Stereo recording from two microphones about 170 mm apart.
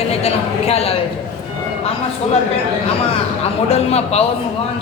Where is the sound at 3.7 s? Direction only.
40° left (ahead or behind).